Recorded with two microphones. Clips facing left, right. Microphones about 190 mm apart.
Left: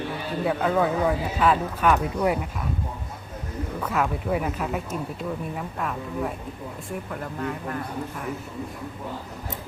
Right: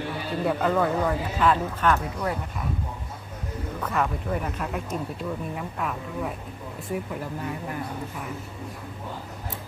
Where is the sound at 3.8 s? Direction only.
5° left (ahead or behind).